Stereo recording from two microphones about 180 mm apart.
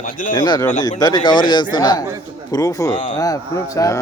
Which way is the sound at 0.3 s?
25° left (ahead or behind).